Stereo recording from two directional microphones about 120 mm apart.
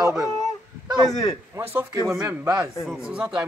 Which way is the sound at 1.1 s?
30° left (ahead or behind).